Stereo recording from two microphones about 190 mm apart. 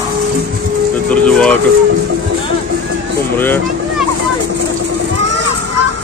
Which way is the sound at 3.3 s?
10° left (ahead or behind).